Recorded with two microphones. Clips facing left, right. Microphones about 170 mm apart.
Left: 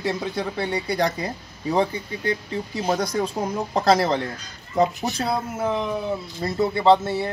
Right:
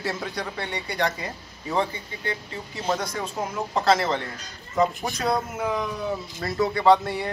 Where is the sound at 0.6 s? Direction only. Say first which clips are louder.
Left 4 dB; 35° left (ahead or behind).